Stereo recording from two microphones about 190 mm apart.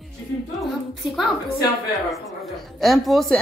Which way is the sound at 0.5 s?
Centre (ahead or behind).